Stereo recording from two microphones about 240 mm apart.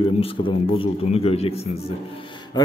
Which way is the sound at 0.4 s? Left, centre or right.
Centre.